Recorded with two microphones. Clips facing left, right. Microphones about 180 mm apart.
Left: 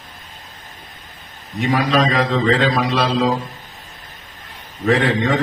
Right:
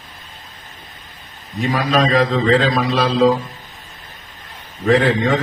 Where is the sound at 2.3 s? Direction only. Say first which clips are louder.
Right 1 dB; 40° right (ahead or behind).